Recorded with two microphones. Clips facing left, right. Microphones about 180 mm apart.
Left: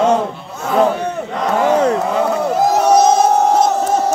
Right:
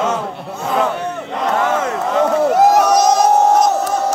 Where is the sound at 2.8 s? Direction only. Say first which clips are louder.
Left 2 dB; 30° left (ahead or behind).